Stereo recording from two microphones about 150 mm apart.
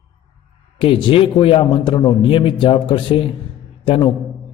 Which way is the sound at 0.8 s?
35° left (ahead or behind).